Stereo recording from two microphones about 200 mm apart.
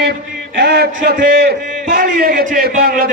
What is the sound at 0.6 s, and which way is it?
A man's voice, 55° right (ahead or behind).